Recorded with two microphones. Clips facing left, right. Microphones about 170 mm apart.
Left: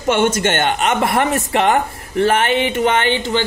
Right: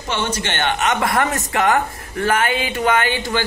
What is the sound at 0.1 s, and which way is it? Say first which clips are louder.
Speech: left 8 dB; 50° left (ahead or behind).